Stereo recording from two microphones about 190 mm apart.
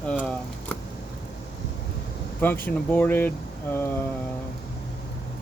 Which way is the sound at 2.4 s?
10° left (ahead or behind).